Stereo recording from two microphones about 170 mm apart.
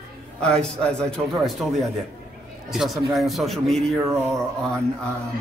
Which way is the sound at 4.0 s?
15° right (ahead or behind).